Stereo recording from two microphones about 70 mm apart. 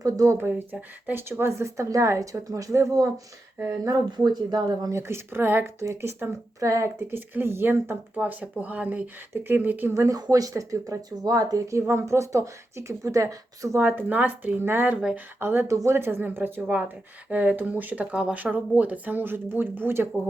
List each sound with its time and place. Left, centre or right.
0.0 s speech: right
0.5 s speech: right
1.3 s a woman's voice: right
4.2 s speech: right
4.9 s speech: right
6.6 s a woman's voice: right
7.1 s speech: right
9.9 s a woman's voice: right
10.2 s speech: right
11.2 s speech: right
11.8 s a woman's voice: right
13.7 s speech: right
15.6 s speech: right